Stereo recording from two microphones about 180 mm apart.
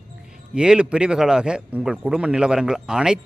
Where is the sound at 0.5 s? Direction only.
5° right (ahead or behind).